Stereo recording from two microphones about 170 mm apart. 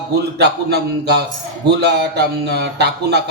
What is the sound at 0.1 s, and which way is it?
A man's voice, 70° right (ahead or behind).